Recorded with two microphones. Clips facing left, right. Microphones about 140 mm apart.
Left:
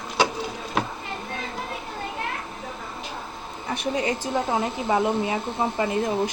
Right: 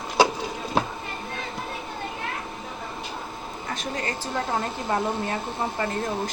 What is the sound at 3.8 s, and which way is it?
Speech, 15° left (ahead or behind).